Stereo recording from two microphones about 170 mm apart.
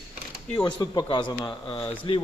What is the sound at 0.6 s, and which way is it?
A man's voice, 25° left (ahead or behind).